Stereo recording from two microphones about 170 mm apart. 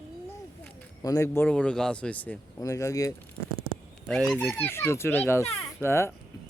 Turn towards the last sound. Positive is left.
turn(degrees=15)  # may be behind; listen again after turning